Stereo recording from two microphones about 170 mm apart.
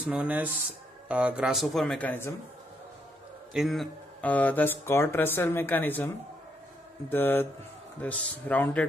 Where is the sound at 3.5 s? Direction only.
Centre (ahead or behind).